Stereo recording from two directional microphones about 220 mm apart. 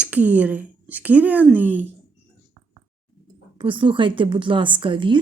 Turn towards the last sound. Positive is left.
turn(degrees=-20)  # may be behind; listen again after turning